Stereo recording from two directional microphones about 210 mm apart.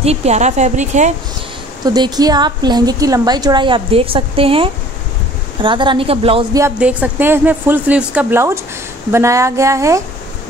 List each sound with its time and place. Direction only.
0.0 s speech: 30° right (ahead or behind)
2.0 s a woman's voice: 20° right (ahead or behind)
6.6 s speech: 5° right (ahead or behind)